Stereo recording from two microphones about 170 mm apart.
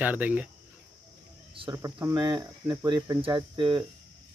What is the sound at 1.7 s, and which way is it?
Speech, 15° right (ahead or behind).